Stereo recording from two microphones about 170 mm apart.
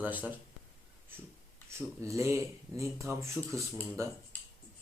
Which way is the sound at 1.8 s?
15° right (ahead or behind).